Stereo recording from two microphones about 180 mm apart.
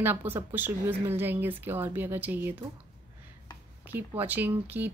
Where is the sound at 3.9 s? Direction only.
10° right (ahead or behind).